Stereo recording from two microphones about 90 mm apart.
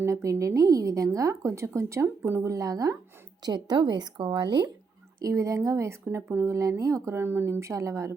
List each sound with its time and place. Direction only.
0.0 s speech: 35° right (ahead or behind)
3.4 s speech: 50° right (ahead or behind)
5.2 s speech: 35° right (ahead or behind)